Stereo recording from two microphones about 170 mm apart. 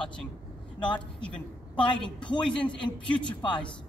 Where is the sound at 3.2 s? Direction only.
30° left (ahead or behind).